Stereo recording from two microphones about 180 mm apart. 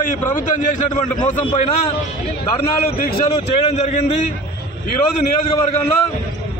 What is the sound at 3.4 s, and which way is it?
Speech, 40° left (ahead or behind).